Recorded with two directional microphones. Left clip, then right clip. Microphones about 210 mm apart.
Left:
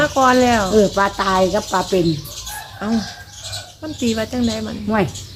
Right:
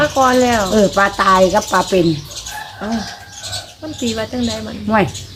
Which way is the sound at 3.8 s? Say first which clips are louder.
Even; 35° left (ahead or behind).